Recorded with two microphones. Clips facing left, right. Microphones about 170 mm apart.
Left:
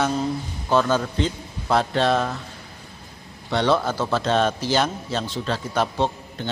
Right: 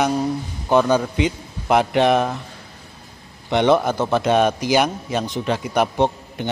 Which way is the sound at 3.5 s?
20° right (ahead or behind).